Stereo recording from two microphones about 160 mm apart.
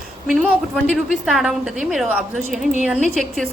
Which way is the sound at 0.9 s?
Centre (ahead or behind).